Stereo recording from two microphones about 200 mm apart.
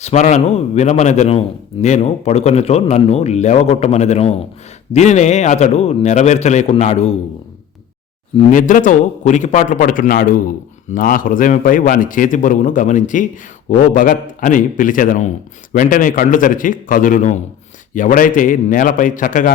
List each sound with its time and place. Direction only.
0.0 s a man's voice: 35° left (ahead or behind)
8.4 s a man's voice: 40° left (ahead or behind)